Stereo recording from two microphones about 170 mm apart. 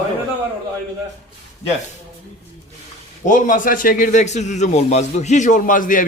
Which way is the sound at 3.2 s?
50° left (ahead or behind).